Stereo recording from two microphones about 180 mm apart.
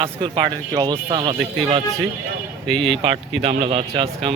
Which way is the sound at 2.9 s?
30° right (ahead or behind).